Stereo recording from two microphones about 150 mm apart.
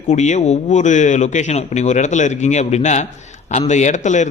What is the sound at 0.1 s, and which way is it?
A man's voice, 50° left (ahead or behind).